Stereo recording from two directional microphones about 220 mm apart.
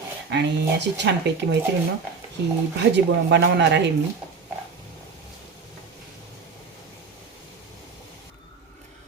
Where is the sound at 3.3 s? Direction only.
50° right (ahead or behind).